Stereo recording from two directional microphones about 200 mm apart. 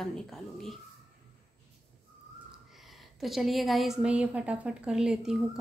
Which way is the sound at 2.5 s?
Centre (ahead or behind).